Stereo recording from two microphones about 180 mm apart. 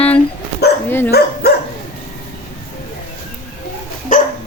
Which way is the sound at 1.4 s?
60° left (ahead or behind).